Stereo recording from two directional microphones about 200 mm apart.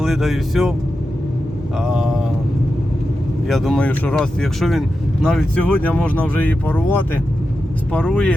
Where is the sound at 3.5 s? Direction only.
Centre (ahead or behind).